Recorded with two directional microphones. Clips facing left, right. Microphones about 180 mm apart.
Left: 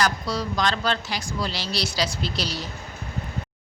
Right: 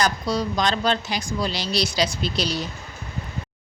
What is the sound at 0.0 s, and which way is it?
Speech, 20° right (ahead or behind).